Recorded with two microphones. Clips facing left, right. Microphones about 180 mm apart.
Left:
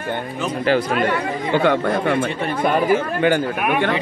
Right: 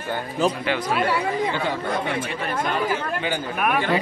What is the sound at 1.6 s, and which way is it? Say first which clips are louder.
Speech: left 7 dB; 60° left (ahead or behind).